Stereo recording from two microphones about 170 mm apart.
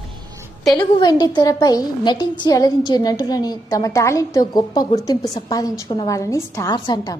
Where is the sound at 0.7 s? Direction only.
25° left (ahead or behind).